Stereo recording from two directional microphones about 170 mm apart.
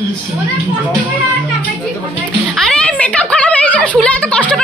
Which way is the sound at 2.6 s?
5° left (ahead or behind).